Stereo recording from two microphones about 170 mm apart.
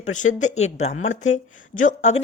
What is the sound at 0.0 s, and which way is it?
A woman's voice, 45° left (ahead or behind).